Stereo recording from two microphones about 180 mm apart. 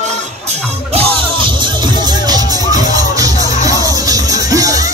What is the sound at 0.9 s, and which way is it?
Music, 25° right (ahead or behind).